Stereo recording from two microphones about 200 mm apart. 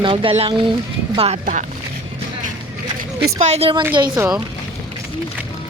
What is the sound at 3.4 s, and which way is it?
Speech, 30° right (ahead or behind).